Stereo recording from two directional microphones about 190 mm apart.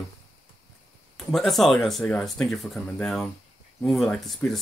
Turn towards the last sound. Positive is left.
turn(degrees=0)  # may be behind; listen again after turning